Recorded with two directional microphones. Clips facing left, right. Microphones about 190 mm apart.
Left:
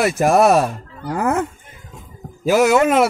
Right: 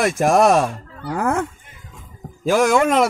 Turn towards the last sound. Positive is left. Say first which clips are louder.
# left 2 dB
turn(degrees=5)  # may be behind; listen again after turning